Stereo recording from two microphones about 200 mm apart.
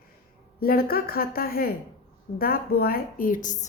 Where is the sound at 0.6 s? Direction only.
50° left (ahead or behind).